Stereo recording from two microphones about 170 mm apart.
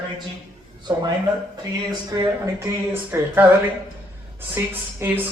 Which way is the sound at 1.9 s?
20° right (ahead or behind).